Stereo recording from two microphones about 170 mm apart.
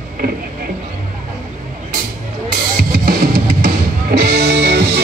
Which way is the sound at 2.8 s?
60° right (ahead or behind).